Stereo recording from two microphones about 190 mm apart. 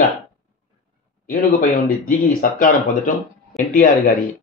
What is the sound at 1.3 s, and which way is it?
Speech, 50° left (ahead or behind).